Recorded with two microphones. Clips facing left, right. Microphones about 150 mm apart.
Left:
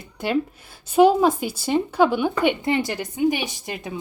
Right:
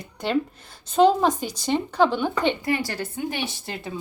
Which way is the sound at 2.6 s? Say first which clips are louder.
Left 3 dB; 25° left (ahead or behind).